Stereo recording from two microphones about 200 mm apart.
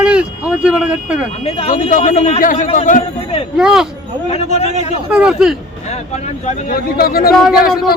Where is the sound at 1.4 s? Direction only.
30° left (ahead or behind).